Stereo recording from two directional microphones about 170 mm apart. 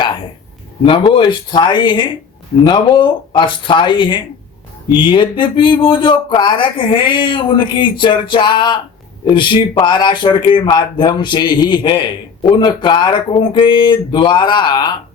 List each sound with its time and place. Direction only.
0.9 s speech: 30° left (ahead or behind)